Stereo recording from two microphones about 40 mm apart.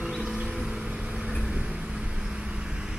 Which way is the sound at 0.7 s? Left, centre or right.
Right.